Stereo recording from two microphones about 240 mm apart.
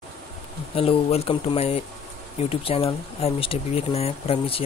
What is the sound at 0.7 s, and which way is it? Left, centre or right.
Speech, left.